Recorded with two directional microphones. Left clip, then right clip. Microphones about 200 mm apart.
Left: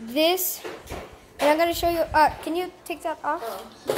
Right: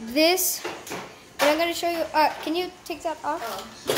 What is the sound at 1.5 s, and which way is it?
A woman's voice, 25° left (ahead or behind).